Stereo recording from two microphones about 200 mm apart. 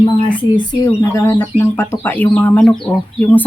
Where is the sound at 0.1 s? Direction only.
25° left (ahead or behind).